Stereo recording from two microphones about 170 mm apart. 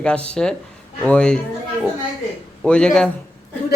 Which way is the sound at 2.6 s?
5° left (ahead or behind).